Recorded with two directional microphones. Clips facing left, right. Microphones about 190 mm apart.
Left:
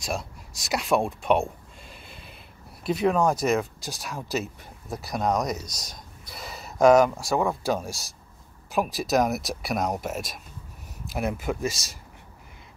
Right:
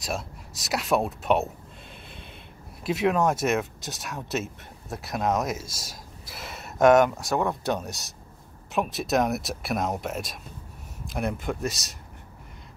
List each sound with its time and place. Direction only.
0.0 s speech: centre (ahead or behind)
2.8 s speech: centre (ahead or behind)